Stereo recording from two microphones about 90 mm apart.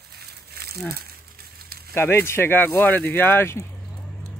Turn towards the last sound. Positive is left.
turn(degrees=30)  # may be behind; listen again after turning